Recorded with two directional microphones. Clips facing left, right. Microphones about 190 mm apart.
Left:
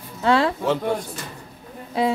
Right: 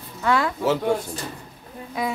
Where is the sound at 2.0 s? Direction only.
30° left (ahead or behind).